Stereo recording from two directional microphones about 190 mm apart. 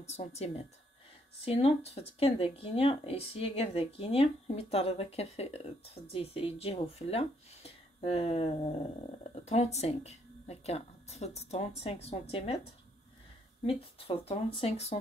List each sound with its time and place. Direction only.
0.0 s speech: 35° left (ahead or behind)
13.7 s speech: 30° left (ahead or behind)